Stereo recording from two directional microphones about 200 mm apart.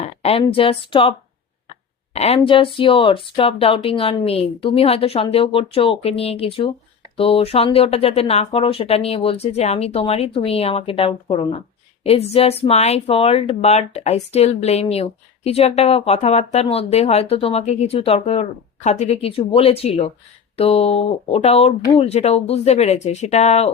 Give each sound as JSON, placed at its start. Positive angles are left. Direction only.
{"t": 0.0, "sound": "a woman's voice", "side_deg": 30}